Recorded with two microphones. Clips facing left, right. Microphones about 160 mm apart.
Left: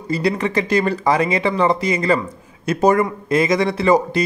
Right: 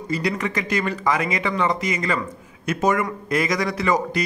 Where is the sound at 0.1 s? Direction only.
30° left (ahead or behind).